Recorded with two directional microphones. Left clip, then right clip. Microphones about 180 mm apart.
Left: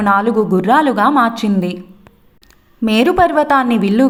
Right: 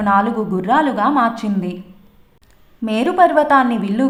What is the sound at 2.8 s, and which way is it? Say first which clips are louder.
A woman's voice: left 2 dB; 30° left (ahead or behind).